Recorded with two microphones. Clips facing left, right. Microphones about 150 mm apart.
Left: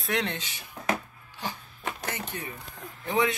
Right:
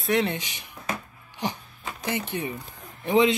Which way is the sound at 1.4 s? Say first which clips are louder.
Right 5 dB; 15° right (ahead or behind).